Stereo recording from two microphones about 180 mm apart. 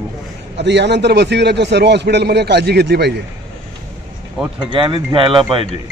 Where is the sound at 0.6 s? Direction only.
75° right (ahead or behind).